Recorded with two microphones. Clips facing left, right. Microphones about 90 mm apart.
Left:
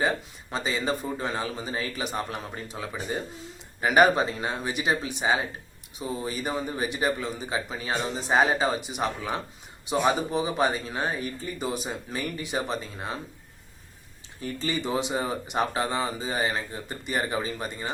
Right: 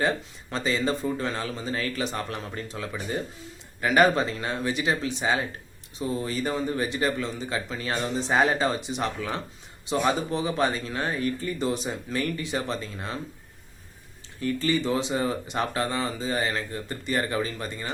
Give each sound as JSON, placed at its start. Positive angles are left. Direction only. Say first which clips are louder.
{"t": 0.5, "sound": "speech", "louder": "right 2 dB", "side_deg": 15}
{"t": 14.4, "sound": "speech", "louder": "right 5 dB", "side_deg": 20}